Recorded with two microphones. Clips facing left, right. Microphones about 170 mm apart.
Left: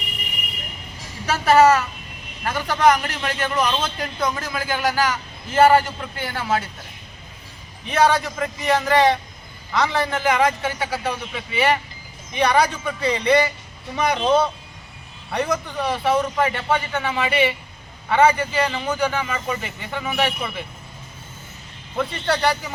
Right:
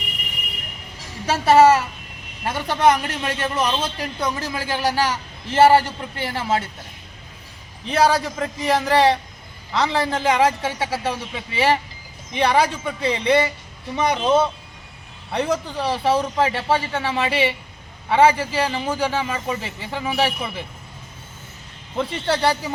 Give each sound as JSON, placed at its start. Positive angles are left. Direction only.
{"t": 1.3, "sound": "a man's voice", "side_deg": -30}
{"t": 7.9, "sound": "a man's voice", "side_deg": -30}
{"t": 21.9, "sound": "a man's voice", "side_deg": -25}